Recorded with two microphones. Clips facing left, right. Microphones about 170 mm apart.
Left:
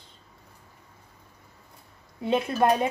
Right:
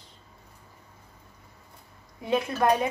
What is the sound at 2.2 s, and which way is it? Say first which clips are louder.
Speech: left 2 dB; 25° left (ahead or behind).